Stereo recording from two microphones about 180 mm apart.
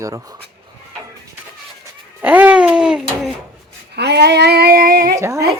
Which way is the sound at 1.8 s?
10° right (ahead or behind).